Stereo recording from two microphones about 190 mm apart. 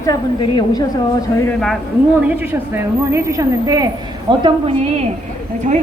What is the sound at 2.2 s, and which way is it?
A woman's voice, 10° right (ahead or behind).